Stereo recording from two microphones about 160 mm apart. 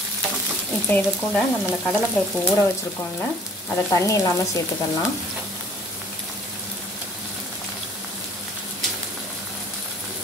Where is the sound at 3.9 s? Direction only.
20° left (ahead or behind).